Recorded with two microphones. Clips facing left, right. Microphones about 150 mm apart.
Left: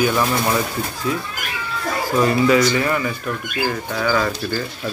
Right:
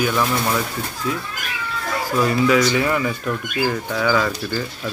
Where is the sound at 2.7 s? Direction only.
10° right (ahead or behind).